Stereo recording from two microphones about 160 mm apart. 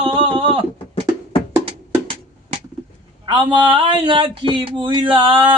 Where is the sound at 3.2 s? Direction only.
30° right (ahead or behind).